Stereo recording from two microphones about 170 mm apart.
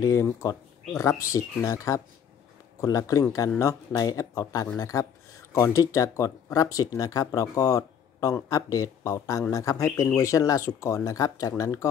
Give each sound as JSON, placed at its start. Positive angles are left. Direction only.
{"t": 0.0, "sound": "speech", "side_deg": 20}